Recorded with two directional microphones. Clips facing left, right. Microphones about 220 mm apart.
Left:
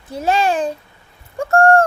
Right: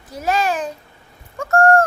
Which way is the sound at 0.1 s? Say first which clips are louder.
Left 3 dB; 30° left (ahead or behind).